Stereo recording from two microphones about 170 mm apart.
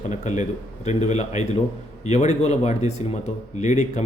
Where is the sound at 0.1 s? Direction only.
45° left (ahead or behind).